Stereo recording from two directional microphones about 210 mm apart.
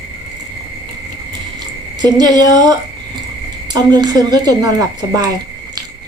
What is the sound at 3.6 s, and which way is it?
A woman's voice, 20° right (ahead or behind).